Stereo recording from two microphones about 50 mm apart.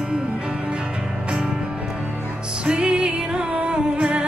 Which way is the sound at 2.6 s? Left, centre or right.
Right.